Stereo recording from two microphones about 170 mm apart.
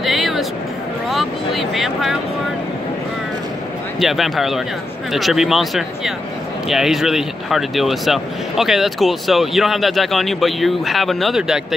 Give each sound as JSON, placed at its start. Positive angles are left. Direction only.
{"t": 0.0, "sound": "music", "side_deg": 0}
{"t": 1.1, "sound": "a sound", "side_deg": 0}
{"t": 4.0, "sound": "speech", "side_deg": 0}